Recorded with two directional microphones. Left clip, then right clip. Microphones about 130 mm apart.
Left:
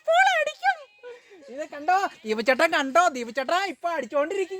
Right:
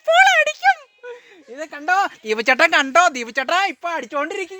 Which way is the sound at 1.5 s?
15° right (ahead or behind).